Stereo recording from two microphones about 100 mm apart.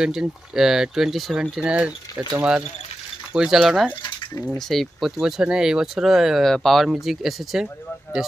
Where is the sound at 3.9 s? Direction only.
55° left (ahead or behind).